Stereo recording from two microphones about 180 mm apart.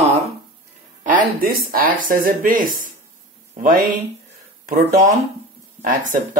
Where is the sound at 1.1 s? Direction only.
55° right (ahead or behind).